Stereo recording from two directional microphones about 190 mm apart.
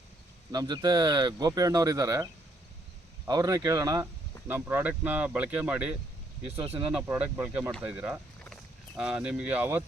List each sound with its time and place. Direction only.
0.5 s speech: 20° right (ahead or behind)